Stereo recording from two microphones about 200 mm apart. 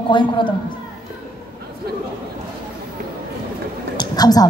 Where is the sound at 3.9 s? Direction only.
20° left (ahead or behind).